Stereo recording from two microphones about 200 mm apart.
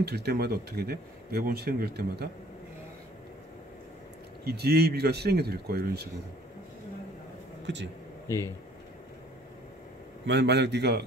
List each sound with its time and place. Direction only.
0.0 s speech: 55° right (ahead or behind)
4.5 s speech: 55° right (ahead or behind)
7.6 s speech: 65° right (ahead or behind)
10.2 s a man's voice: 60° right (ahead or behind)